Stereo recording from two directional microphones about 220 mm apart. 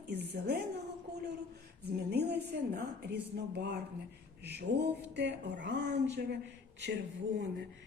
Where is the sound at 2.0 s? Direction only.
45° right (ahead or behind).